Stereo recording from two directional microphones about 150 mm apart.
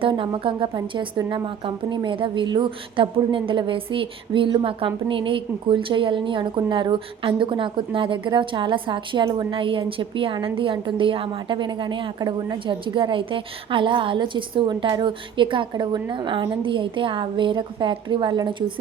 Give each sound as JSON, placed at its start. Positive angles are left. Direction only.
{"t": 0.0, "sound": "a woman's voice", "side_deg": -35}